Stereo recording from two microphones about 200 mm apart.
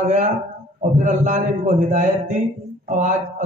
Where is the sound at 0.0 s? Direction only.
40° right (ahead or behind).